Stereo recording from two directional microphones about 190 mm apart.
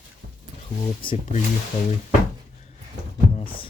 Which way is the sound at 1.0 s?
25° left (ahead or behind).